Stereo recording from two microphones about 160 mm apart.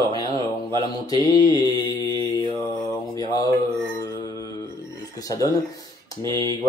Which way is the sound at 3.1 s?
25° left (ahead or behind).